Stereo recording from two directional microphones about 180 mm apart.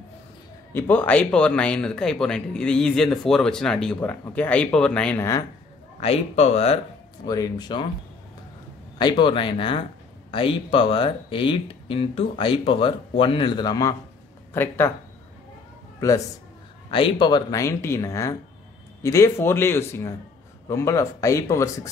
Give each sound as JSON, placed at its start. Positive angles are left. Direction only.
{"t": 0.7, "sound": "speech", "side_deg": 10}
{"t": 5.9, "sound": "speech", "side_deg": 35}
{"t": 7.2, "sound": "speech", "side_deg": 20}
{"t": 8.9, "sound": "speech", "side_deg": 25}
{"t": 16.9, "sound": "speech", "side_deg": 25}